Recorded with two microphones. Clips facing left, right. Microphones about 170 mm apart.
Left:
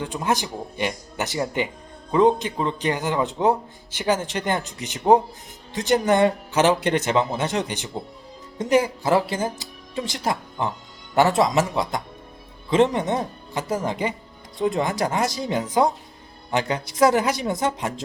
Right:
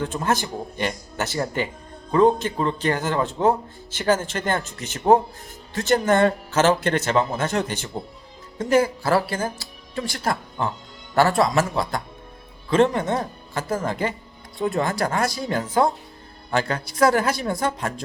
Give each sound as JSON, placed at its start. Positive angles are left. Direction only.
{"t": 0.0, "sound": "speech", "side_deg": 15}